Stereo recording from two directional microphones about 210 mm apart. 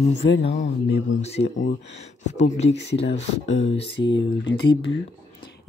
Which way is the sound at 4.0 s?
60° left (ahead or behind).